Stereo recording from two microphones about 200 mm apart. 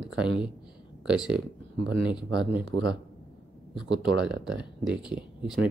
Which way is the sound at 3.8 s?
25° left (ahead or behind).